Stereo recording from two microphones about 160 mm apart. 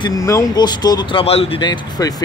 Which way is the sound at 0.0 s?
20° left (ahead or behind).